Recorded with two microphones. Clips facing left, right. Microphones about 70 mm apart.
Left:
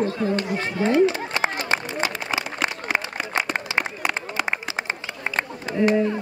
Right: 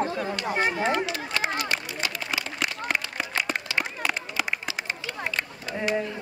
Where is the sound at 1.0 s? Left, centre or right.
Left.